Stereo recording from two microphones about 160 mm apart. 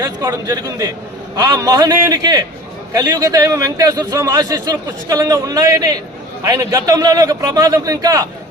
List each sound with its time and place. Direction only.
0.0 s a man's voice: 25° right (ahead or behind)